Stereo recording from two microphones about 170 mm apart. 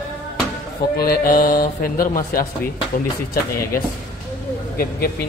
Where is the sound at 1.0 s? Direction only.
60° left (ahead or behind).